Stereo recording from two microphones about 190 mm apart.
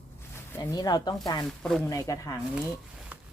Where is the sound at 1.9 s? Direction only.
15° left (ahead or behind).